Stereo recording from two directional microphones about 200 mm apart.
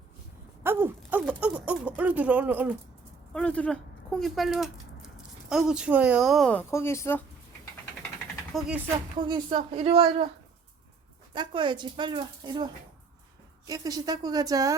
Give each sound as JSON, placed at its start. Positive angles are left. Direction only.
{"t": 0.6, "sound": "a sound", "side_deg": -10}
{"t": 2.0, "sound": "speech", "side_deg": -5}
{"t": 3.3, "sound": "speech", "side_deg": 5}
{"t": 8.5, "sound": "a sound", "side_deg": -5}
{"t": 9.2, "sound": "speech", "side_deg": -25}
{"t": 11.3, "sound": "speech", "side_deg": -25}